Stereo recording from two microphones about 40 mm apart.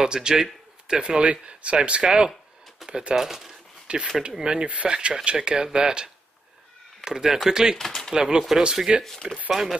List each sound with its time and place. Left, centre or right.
0.0 s speech: centre
3.2 s speech: centre
3.8 s speech: right
7.1 s speech: centre
7.7 s speech: centre
8.4 s speech: centre
8.9 s speech: centre